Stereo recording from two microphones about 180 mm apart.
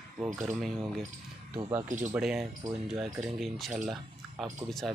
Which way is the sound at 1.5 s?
25° right (ahead or behind).